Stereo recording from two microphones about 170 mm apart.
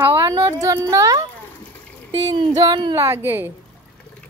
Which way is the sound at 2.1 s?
30° right (ahead or behind).